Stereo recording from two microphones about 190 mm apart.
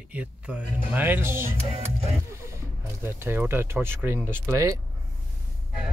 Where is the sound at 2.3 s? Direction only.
15° right (ahead or behind).